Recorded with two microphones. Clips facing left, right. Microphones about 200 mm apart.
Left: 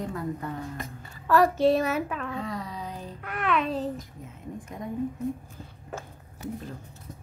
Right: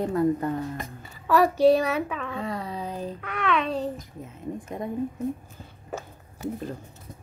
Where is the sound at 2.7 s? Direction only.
30° right (ahead or behind).